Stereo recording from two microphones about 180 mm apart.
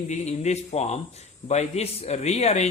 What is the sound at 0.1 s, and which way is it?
A man's voice, 40° left (ahead or behind).